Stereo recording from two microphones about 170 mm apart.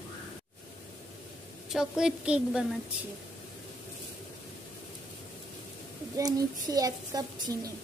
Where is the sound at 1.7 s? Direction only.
5° right (ahead or behind).